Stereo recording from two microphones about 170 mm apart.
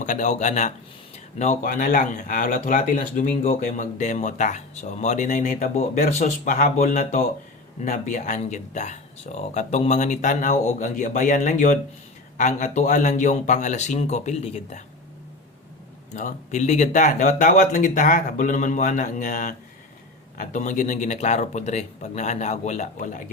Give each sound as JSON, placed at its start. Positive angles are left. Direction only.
{"t": 0.0, "sound": "speech", "side_deg": 45}
{"t": 16.1, "sound": "speech", "side_deg": 45}